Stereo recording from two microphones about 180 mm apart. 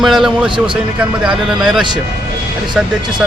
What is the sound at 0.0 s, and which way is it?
Speech, centre (ahead or behind).